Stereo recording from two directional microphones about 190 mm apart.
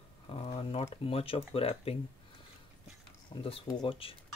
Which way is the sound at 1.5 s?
30° left (ahead or behind).